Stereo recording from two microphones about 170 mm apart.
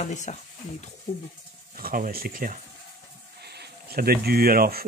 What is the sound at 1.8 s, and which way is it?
Speech, 60° right (ahead or behind).